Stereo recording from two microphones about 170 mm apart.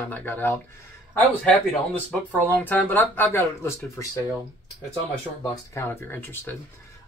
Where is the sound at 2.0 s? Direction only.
10° left (ahead or behind).